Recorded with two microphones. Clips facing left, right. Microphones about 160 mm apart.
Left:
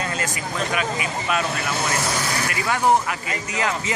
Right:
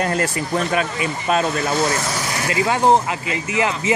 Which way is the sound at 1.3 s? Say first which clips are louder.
Right 6 dB; 35° right (ahead or behind).